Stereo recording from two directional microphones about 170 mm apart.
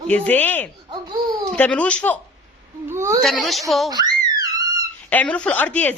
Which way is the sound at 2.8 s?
15° right (ahead or behind).